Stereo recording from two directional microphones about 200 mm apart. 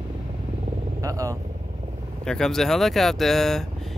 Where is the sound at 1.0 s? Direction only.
15° right (ahead or behind).